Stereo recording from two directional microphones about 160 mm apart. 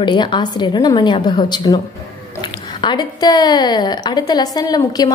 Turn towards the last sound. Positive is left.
turn(degrees=25)  # may be behind; listen again after turning